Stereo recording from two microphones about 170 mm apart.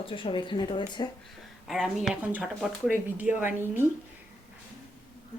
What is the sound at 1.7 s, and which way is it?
Speech, centre (ahead or behind).